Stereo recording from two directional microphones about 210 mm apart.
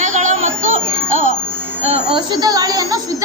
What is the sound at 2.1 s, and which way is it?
Speech, 25° right (ahead or behind).